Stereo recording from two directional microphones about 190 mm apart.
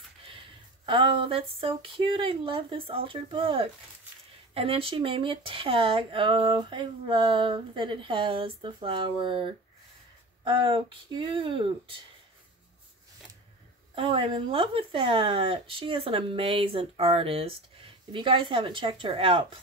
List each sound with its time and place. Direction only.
0.8 s speech: 25° right (ahead or behind)
13.9 s speech: 25° right (ahead or behind)